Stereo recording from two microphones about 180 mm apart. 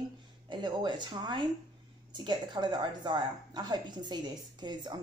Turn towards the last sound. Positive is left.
turn(degrees=-25)  # may be behind; listen again after turning